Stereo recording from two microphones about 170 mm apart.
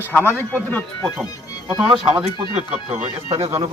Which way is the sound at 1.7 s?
25° right (ahead or behind).